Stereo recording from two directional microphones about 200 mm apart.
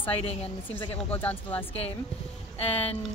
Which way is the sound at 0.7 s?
10° left (ahead or behind).